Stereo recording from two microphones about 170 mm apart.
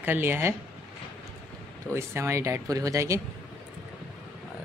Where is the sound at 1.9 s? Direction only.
15° right (ahead or behind).